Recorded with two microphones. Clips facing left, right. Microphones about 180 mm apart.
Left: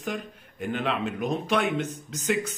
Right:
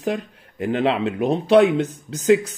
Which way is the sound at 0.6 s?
90° right.